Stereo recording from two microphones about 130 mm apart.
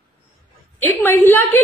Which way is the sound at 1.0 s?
15° left (ahead or behind).